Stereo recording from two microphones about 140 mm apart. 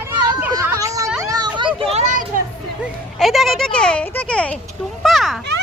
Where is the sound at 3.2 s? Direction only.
Centre (ahead or behind).